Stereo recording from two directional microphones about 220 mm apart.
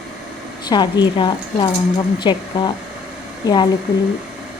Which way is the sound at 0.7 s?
20° left (ahead or behind).